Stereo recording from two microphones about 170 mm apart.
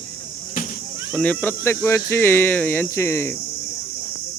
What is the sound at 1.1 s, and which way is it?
Speech, 10° left (ahead or behind).